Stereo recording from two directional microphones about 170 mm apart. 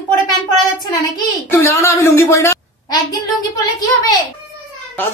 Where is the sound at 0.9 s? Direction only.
20° left (ahead or behind).